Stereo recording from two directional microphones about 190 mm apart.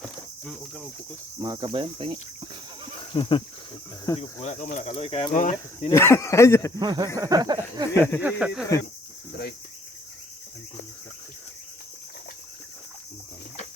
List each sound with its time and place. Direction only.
1.4 s snake: 20° right (ahead or behind)
3.1 s a sound: 25° left (ahead or behind)
4.2 s speech: 40° left (ahead or behind)
5.9 s speech: 15° left (ahead or behind)
6.7 s snake: 20° right (ahead or behind)
8.2 s speech: 5° right (ahead or behind)